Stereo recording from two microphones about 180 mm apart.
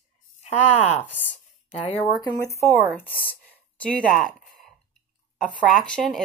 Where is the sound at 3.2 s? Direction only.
10° left (ahead or behind).